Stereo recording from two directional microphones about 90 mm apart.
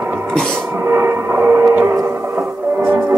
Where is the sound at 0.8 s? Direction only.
25° right (ahead or behind).